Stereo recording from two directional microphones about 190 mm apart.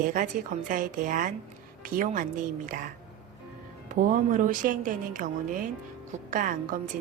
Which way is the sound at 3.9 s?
45° right (ahead or behind).